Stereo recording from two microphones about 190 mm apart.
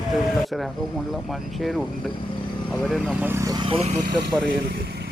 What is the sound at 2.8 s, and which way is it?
Speech, centre (ahead or behind).